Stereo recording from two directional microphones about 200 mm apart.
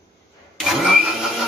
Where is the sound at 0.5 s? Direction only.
Centre (ahead or behind).